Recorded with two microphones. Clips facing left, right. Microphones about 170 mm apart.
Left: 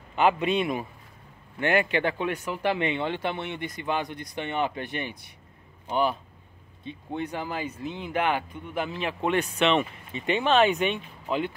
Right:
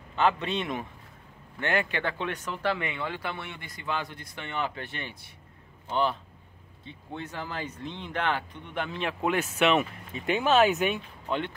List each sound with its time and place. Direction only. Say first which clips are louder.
0.1 s speech: left 3 dB; 15° left (ahead or behind)